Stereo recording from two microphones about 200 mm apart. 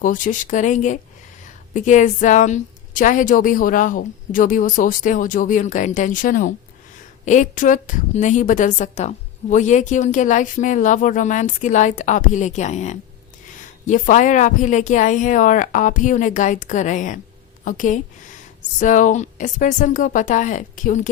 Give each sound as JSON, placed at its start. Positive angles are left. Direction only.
{"t": 0.0, "sound": "a woman's voice", "side_deg": 40}